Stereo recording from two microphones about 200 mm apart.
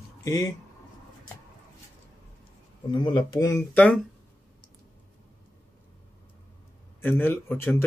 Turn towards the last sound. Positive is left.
turn(degrees=10)  # may be behind; listen again after turning